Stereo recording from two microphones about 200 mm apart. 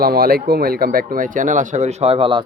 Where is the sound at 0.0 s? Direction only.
50° right (ahead or behind).